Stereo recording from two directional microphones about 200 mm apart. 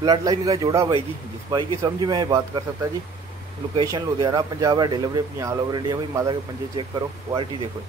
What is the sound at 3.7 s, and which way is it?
Speech, 20° right (ahead or behind).